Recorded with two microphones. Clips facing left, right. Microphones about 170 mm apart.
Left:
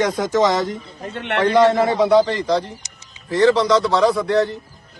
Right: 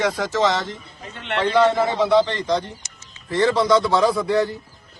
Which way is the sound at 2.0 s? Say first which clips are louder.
Left 3 dB; 40° left (ahead or behind).